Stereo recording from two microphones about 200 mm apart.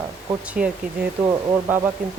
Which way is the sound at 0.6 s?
5° right (ahead or behind).